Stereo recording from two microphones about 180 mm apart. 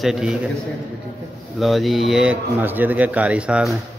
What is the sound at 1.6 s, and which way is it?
Speech, centre (ahead or behind).